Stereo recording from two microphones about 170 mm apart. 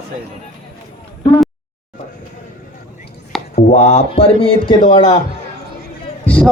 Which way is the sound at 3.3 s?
Centre (ahead or behind).